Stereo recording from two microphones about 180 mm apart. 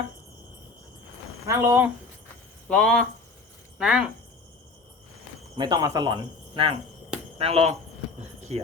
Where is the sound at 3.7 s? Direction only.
5° right (ahead or behind).